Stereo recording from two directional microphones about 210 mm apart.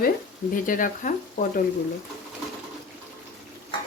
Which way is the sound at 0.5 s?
40° left (ahead or behind).